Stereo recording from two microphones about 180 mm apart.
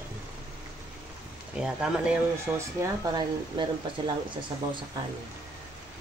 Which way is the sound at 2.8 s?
25° right (ahead or behind).